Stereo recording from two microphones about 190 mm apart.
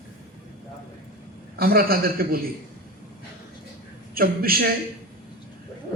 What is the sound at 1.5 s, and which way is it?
Speech, 50° right (ahead or behind).